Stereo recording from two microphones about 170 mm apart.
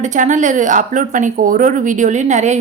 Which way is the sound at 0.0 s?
45° right (ahead or behind).